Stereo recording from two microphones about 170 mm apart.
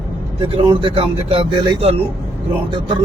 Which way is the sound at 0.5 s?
30° right (ahead or behind).